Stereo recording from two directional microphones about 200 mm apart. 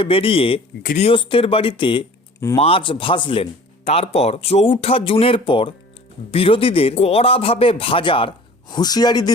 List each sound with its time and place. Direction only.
0.0 s speech: 25° left (ahead or behind)
0.8 s speech: 45° left (ahead or behind)
1.0 s speech: 25° left (ahead or behind)